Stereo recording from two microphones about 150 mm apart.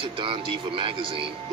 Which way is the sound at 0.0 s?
35° right (ahead or behind).